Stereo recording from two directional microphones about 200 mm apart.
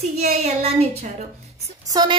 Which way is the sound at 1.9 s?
20° right (ahead or behind).